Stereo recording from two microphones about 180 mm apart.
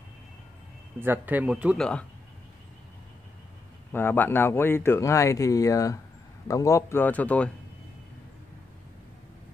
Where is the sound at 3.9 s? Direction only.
10° left (ahead or behind).